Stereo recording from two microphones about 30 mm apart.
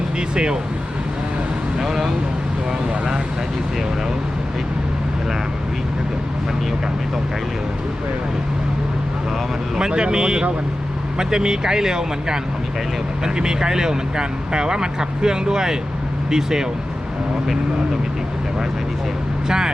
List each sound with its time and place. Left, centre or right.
0.2 s speech: right
1.8 s speech: centre
9.7 s speech: right
19.5 s speech: right